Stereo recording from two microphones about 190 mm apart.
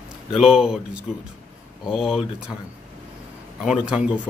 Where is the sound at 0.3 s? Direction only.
Centre (ahead or behind).